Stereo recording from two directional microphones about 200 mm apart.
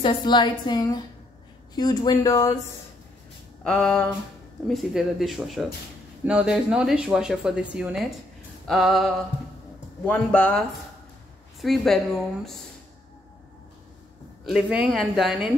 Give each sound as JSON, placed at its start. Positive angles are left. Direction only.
{"t": 0.0, "sound": "a woman's voice", "side_deg": 25}
{"t": 3.6, "sound": "speech", "side_deg": 5}
{"t": 11.6, "sound": "speech", "side_deg": 0}
{"t": 14.4, "sound": "speech", "side_deg": -5}